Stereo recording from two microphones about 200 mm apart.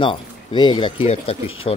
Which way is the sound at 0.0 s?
25° left (ahead or behind).